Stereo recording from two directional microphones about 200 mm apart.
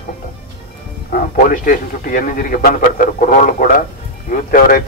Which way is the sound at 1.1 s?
40° left (ahead or behind).